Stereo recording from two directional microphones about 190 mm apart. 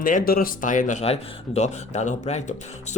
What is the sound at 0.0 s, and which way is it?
Speech, 45° left (ahead or behind).